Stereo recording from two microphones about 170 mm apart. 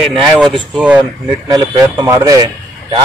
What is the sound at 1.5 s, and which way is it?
Speech, 20° right (ahead or behind).